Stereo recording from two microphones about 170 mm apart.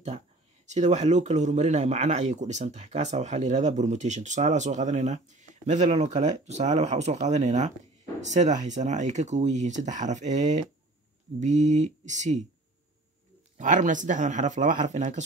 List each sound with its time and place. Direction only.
0.7 s speech: 45° right (ahead or behind)
13.6 s speech: 50° right (ahead or behind)